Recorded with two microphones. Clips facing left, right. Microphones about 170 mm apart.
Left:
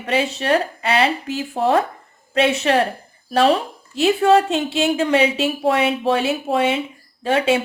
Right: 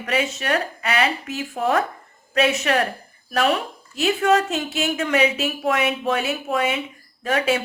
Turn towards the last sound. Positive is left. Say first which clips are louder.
# left 4 dB
turn(degrees=30)  # may be behind; listen again after turning